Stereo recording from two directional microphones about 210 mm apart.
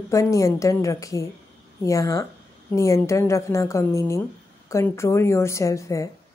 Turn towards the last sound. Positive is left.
turn(degrees=15)  # may be behind; listen again after turning